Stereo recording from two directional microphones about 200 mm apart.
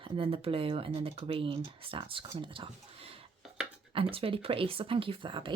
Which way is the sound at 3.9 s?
30° right (ahead or behind).